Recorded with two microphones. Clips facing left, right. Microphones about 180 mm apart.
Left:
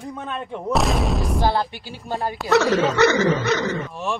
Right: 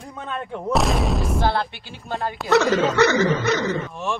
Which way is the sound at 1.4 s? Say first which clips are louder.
Left 1 dB; 15° left (ahead or behind).